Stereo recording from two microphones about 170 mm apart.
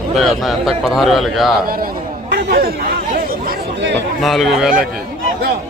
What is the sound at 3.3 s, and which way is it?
Chatter, 75° right (ahead or behind).